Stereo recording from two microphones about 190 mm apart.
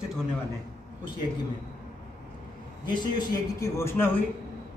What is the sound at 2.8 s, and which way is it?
A man's voice, 20° left (ahead or behind).